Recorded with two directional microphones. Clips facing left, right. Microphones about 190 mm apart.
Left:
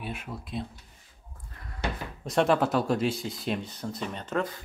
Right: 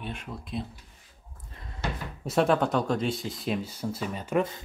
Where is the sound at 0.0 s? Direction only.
5° left (ahead or behind).